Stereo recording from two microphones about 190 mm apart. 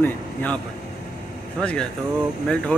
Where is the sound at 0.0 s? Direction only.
10° left (ahead or behind).